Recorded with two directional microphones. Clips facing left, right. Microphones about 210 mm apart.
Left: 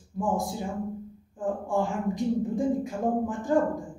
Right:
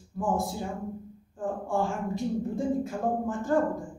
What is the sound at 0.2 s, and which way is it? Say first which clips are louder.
Speech: left 1 dB; 15° left (ahead or behind).